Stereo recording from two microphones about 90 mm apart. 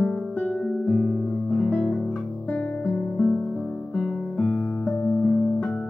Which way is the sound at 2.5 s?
5° left (ahead or behind).